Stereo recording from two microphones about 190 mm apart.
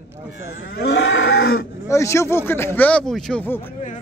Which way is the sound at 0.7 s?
60° left (ahead or behind).